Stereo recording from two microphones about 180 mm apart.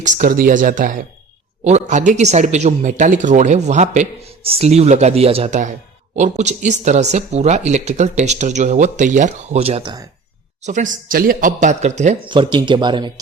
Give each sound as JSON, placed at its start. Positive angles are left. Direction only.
{"t": 0.0, "sound": "a man's voice", "side_deg": -45}
{"t": 12.2, "sound": "speech", "side_deg": -25}